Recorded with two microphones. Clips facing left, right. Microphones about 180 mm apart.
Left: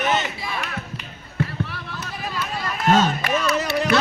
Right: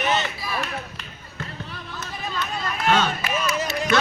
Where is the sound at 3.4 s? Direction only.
65° left (ahead or behind).